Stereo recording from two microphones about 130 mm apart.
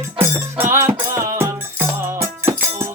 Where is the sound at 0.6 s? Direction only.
20° right (ahead or behind).